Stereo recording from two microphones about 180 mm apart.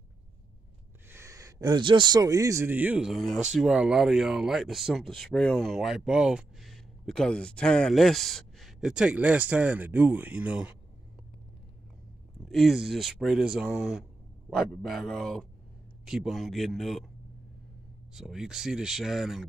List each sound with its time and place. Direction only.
1.0 s speech: 15° right (ahead or behind)
12.4 s speech: centre (ahead or behind)
18.1 s speech: centre (ahead or behind)